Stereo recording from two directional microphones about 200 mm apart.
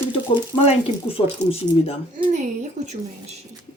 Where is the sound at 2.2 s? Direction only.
35° right (ahead or behind).